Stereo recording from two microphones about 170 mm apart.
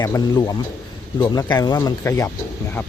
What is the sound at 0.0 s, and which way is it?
Speech, 20° left (ahead or behind).